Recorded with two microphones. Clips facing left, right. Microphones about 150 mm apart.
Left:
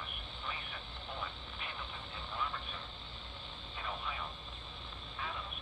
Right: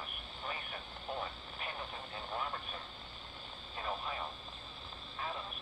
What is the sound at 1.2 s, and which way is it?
Vehicle, 40° right (ahead or behind).